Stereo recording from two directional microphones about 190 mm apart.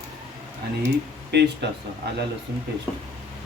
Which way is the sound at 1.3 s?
60° right (ahead or behind).